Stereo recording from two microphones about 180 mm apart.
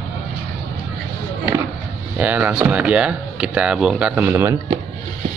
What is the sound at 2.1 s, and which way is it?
Speech, 10° right (ahead or behind).